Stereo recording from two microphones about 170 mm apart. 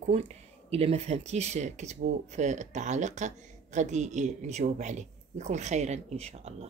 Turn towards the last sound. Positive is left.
turn(degrees=-40)  # may be behind; listen again after turning